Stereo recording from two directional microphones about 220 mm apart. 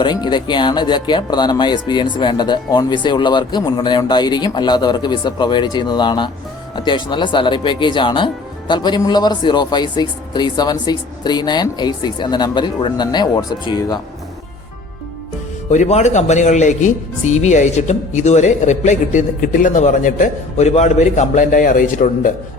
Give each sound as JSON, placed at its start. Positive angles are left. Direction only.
{"t": 0.0, "sound": "speech", "side_deg": 20}
{"t": 15.7, "sound": "speech", "side_deg": 30}